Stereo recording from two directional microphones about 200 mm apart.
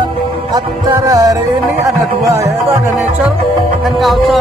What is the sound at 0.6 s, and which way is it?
Music, 20° right (ahead or behind).